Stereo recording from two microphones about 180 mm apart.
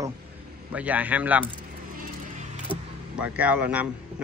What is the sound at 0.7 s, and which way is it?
Speech, 10° right (ahead or behind).